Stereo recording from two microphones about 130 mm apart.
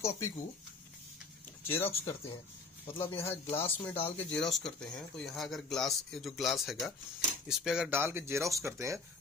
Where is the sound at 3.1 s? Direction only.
20° left (ahead or behind).